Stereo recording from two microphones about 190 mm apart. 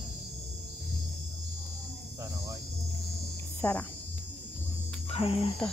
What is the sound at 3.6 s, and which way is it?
Speech, 5° left (ahead or behind).